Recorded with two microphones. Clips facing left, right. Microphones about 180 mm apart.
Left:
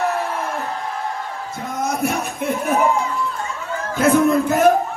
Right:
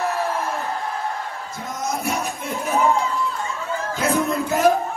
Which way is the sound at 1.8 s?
60° left (ahead or behind).